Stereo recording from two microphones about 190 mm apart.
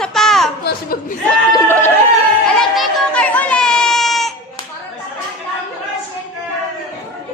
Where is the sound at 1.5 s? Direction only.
10° left (ahead or behind).